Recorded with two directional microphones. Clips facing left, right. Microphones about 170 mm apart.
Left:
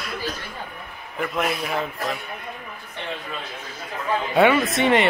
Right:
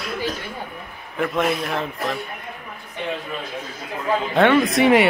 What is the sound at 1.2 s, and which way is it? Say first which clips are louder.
Speech: right 4 dB; centre (ahead or behind).